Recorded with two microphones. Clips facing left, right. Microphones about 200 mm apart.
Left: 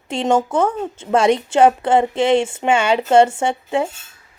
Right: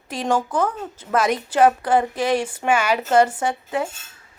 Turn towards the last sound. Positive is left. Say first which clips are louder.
# left 4 dB
turn(degrees=25)  # may be behind; listen again after turning